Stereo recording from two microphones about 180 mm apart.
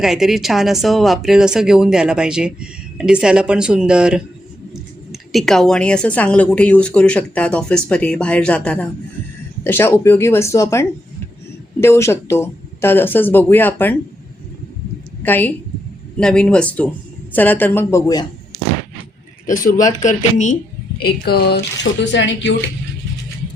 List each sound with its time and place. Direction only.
0.0 s speech: centre (ahead or behind)
15.2 s a woman's voice: 10° left (ahead or behind)
19.5 s speech: 50° left (ahead or behind)
21.0 s speech: 60° left (ahead or behind)
22.0 s speech: 80° left